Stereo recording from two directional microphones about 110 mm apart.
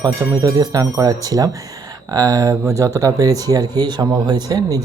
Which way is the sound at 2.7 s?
25° right (ahead or behind).